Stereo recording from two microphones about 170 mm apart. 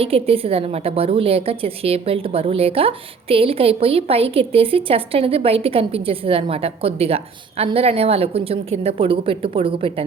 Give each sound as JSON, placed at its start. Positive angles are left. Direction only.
{"t": 0.0, "sound": "a woman's voice", "side_deg": -35}